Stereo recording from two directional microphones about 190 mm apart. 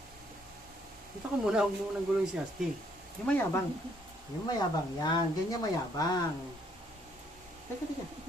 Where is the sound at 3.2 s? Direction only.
5° left (ahead or behind).